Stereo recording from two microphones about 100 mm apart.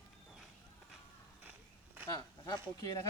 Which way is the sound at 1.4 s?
15° right (ahead or behind).